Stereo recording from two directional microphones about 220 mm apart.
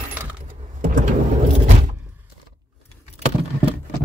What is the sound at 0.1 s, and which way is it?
Coin, 10° right (ahead or behind).